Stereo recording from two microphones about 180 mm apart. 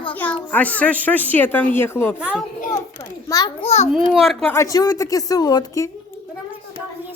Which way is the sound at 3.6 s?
40° left (ahead or behind).